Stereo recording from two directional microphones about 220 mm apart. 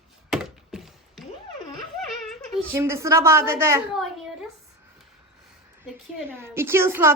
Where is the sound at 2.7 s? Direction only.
10° right (ahead or behind).